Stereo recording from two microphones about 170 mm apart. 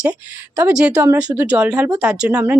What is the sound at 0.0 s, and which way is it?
Speech, 10° right (ahead or behind).